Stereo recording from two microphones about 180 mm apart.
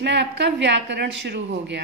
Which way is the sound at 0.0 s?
75° right (ahead or behind).